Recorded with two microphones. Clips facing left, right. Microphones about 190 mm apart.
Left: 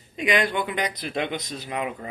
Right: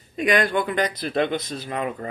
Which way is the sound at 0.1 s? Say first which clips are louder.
Right 2 dB; 45° right (ahead or behind).